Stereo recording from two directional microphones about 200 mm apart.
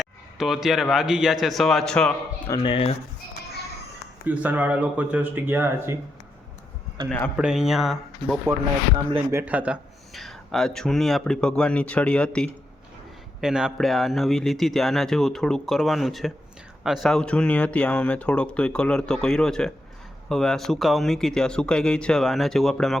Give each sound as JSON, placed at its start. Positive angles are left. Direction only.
{"t": 0.0, "sound": "speech", "side_deg": 0}
{"t": 2.6, "sound": "speech", "side_deg": 30}
{"t": 4.3, "sound": "speech", "side_deg": -10}
{"t": 7.3, "sound": "speech", "side_deg": -5}